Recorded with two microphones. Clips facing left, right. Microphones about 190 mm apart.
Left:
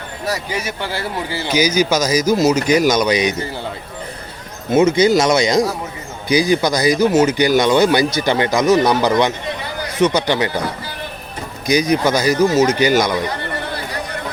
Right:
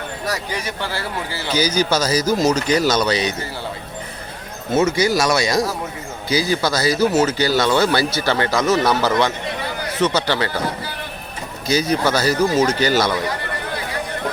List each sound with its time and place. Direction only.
0.6 s speech: 15° left (ahead or behind)
4.7 s speech: 15° left (ahead or behind)
11.6 s speech: 15° left (ahead or behind)